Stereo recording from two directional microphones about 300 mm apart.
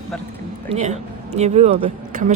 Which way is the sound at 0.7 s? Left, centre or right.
Right.